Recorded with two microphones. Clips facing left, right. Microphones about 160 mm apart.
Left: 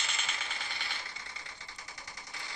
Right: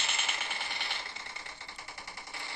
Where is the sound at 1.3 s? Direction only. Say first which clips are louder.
Right 2 dB; 55° right (ahead or behind).